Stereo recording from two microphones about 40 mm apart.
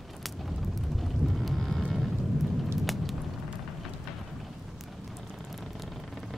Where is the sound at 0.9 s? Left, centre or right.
Centre.